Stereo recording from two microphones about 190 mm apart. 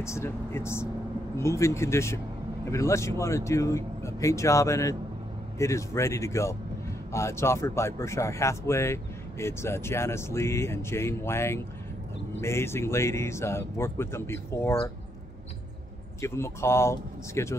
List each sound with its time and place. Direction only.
0.0 s speech: 15° left (ahead or behind)
16.2 s speech: 15° left (ahead or behind)